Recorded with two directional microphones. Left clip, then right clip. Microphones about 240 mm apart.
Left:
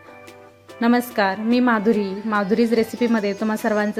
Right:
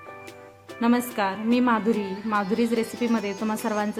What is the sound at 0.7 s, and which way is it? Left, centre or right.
A woman's voice, centre.